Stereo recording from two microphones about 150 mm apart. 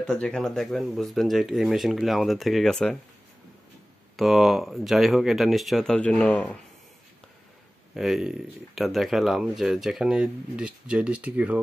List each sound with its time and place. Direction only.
0.0 s speech: 5° left (ahead or behind)
4.2 s speech: centre (ahead or behind)
7.9 s speech: centre (ahead or behind)